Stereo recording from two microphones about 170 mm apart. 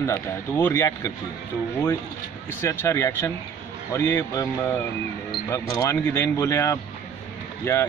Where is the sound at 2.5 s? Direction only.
15° left (ahead or behind).